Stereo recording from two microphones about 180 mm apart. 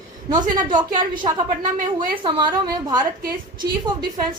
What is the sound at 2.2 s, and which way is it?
Speech, 25° right (ahead or behind).